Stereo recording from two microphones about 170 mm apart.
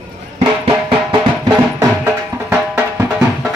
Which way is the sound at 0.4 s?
30° right (ahead or behind).